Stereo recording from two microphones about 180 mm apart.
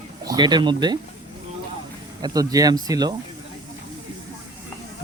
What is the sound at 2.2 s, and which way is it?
Speech, 20° right (ahead or behind).